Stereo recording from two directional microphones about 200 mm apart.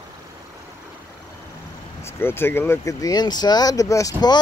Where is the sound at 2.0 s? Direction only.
10° left (ahead or behind).